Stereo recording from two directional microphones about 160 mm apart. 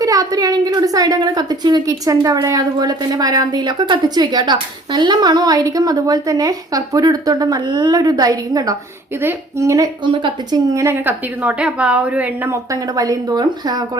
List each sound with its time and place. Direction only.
0.0 s a woman's voice: 20° right (ahead or behind)